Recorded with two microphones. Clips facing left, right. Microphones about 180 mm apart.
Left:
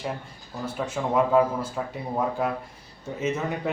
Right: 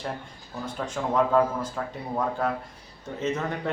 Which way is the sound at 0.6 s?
5° left (ahead or behind).